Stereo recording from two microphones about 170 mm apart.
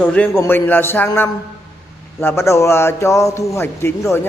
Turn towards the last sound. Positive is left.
turn(degrees=15)  # may be behind; listen again after turning